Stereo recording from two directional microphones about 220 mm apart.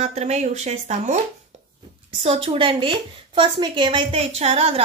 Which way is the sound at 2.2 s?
25° right (ahead or behind).